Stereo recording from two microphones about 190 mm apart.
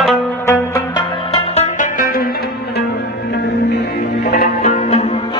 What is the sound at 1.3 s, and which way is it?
Music, 35° left (ahead or behind).